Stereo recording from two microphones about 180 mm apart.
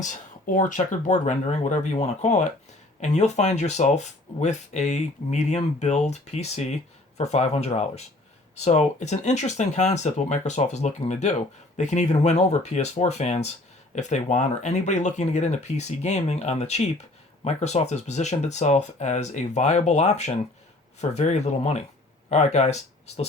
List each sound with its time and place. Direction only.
0.0 s speech: 45° left (ahead or behind)